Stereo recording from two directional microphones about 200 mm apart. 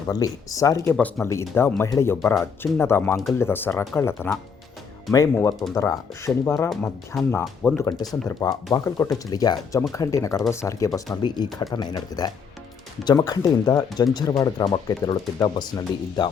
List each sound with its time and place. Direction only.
0.1 s speech: 15° left (ahead or behind)
7.4 s speech: centre (ahead or behind)
7.8 s speech: 20° left (ahead or behind)